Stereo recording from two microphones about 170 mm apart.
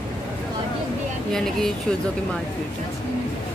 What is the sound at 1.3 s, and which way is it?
Speech, 5° left (ahead or behind).